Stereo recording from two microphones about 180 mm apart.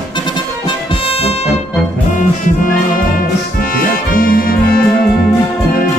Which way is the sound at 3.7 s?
50° left (ahead or behind).